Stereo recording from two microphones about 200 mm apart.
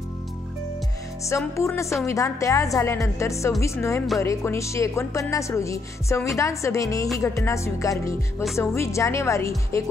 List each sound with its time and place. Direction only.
1.3 s music: 10° left (ahead or behind)